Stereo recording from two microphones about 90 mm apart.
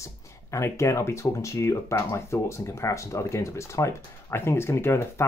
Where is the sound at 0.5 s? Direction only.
30° left (ahead or behind).